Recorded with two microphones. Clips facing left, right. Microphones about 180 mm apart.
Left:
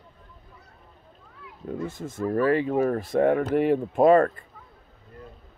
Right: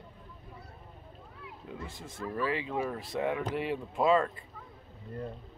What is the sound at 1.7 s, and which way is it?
Speech, 45° left (ahead or behind).